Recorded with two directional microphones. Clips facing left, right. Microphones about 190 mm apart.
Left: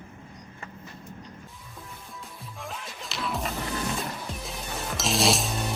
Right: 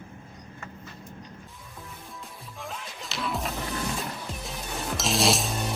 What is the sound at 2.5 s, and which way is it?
Music, centre (ahead or behind).